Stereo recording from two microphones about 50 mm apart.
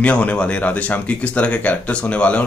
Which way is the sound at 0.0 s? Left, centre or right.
Left.